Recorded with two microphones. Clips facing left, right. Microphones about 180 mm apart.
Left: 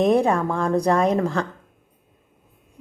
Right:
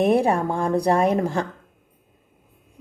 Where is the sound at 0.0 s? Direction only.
10° right (ahead or behind).